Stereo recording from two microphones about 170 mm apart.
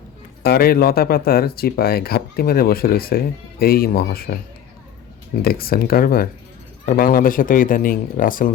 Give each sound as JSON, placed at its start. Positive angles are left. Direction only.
{"t": 0.4, "sound": "speech", "side_deg": 65}
{"t": 5.4, "sound": "speech", "side_deg": 60}